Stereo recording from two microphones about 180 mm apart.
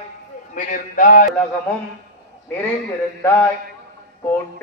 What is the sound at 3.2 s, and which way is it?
Speech, 10° left (ahead or behind).